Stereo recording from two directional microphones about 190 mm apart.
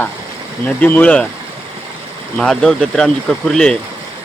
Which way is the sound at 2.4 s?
5° left (ahead or behind).